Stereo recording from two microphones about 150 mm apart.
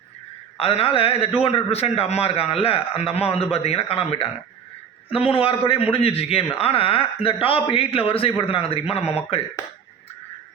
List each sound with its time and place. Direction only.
0.6 s a man's voice: 40° left (ahead or behind)